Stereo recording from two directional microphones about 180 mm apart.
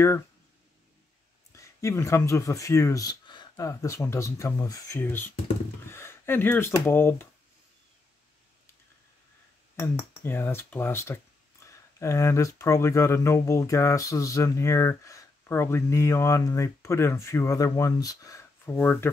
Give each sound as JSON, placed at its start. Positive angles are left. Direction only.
{"t": 1.5, "sound": "speech", "side_deg": 15}
{"t": 9.8, "sound": "speech", "side_deg": 15}